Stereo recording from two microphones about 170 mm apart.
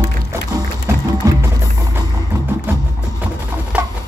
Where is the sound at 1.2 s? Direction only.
20° right (ahead or behind).